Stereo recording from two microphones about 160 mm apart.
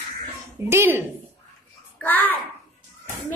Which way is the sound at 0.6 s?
15° right (ahead or behind).